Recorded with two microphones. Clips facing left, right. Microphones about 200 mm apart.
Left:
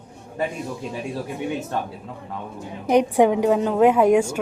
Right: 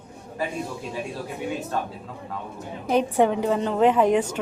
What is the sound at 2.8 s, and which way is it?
A woman's voice, 15° left (ahead or behind).